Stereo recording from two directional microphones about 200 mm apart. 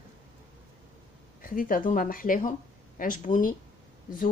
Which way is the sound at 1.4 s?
45° left (ahead or behind).